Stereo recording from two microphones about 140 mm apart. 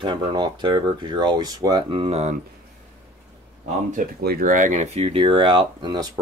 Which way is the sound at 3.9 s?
85° right.